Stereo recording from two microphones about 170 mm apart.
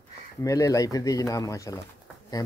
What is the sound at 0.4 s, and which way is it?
Speech, 20° left (ahead or behind).